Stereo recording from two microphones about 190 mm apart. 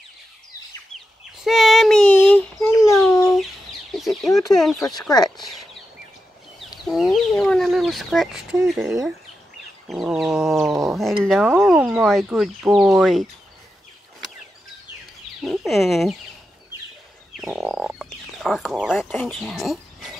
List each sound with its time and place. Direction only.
0.9 s a sound: centre (ahead or behind); by 3.3 s 15° left (ahead or behind)
3.9 s speech: centre (ahead or behind)
4.9 s speech: 20° left (ahead or behind)
6.9 s speech: centre (ahead or behind)
9.8 s speech: centre (ahead or behind)
15.4 s speech: centre (ahead or behind)
17.4 s speech: centre (ahead or behind)